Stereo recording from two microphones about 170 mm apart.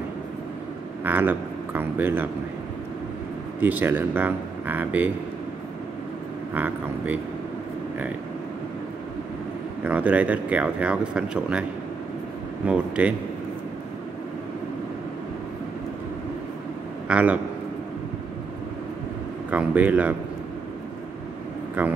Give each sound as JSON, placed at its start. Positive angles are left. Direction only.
{"t": 1.0, "sound": "speech", "side_deg": -10}
{"t": 3.6, "sound": "speech", "side_deg": -10}
{"t": 6.5, "sound": "speech", "side_deg": -10}
{"t": 9.8, "sound": "speech", "side_deg": -10}
{"t": 12.6, "sound": "speech", "side_deg": -5}
{"t": 17.1, "sound": "speech", "side_deg": -10}
{"t": 19.5, "sound": "speech", "side_deg": -10}
{"t": 21.8, "sound": "speech", "side_deg": -10}